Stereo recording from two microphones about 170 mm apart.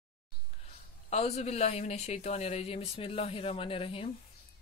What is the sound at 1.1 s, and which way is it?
Speech, 40° left (ahead or behind).